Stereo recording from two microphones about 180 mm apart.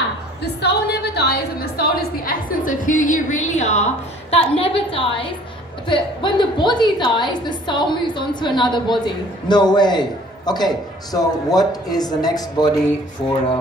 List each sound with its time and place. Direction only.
0.4 s a woman's voice: 70° left (ahead or behind); by 13.4 s 25° left (ahead or behind)